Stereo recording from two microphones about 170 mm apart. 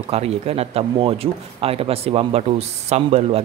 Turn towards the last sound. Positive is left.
turn(degrees=-40)  # may be behind; listen again after turning